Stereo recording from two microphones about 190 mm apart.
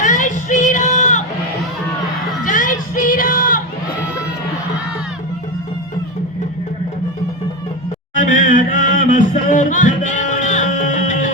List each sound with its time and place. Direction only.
0.0 s music: 40° left (ahead or behind)
2.4 s music: 45° left (ahead or behind)
8.1 s music: 40° left (ahead or behind)